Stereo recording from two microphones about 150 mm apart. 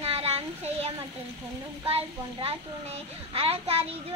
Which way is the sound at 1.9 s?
40° right (ahead or behind).